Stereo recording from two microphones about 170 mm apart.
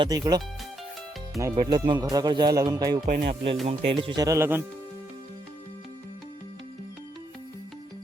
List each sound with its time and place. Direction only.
0.0 s speech: 20° right (ahead or behind)
3.1 s speech: 75° right (ahead or behind)
3.7 s speech: 30° right (ahead or behind); by 4.6 s 15° right (ahead or behind)